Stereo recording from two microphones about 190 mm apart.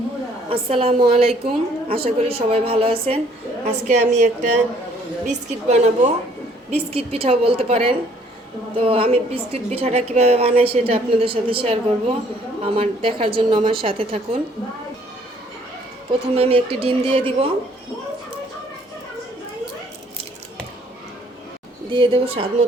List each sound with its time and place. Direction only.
0.5 s a woman's voice: 30° right (ahead or behind)
16.3 s a woman's voice: 30° right (ahead or behind)
21.8 s a woman's voice: 25° right (ahead or behind)